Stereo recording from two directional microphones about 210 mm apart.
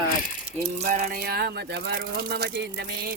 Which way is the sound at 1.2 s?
50° right (ahead or behind).